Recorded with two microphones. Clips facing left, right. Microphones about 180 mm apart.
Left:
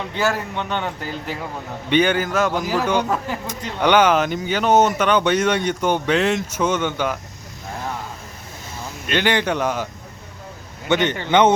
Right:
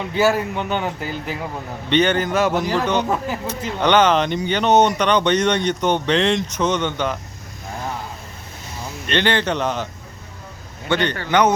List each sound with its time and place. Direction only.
0.1 s a man's voice: 5° right (ahead or behind)
1.9 s a man's voice: 10° left (ahead or behind)
9.0 s a man's voice: 10° left (ahead or behind)